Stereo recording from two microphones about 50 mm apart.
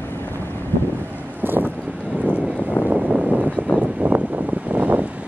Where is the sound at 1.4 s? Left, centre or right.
Right.